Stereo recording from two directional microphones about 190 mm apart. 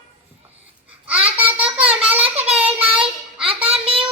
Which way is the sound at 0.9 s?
5° right (ahead or behind).